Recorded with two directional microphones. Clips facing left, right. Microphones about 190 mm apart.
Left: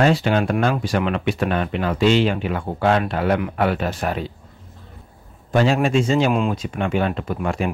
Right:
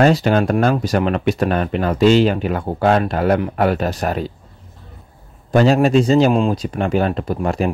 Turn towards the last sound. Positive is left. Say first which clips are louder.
# right 4 dB
turn(degrees=-40)  # may be behind; listen again after turning